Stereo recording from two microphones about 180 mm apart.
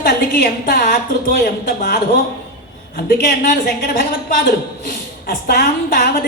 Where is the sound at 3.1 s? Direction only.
55° left (ahead or behind).